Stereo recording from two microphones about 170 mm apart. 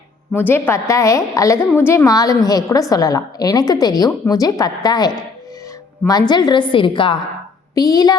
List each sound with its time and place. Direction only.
0.3 s a woman's voice: 10° left (ahead or behind)